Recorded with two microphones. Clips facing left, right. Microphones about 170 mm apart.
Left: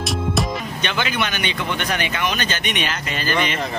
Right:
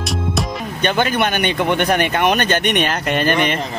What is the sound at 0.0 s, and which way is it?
Music, centre (ahead or behind).